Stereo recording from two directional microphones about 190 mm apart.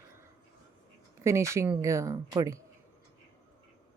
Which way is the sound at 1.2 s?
15° right (ahead or behind).